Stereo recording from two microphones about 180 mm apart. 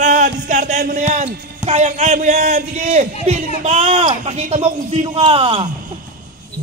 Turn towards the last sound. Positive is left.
turn(degrees=-30)  # may be behind; listen again after turning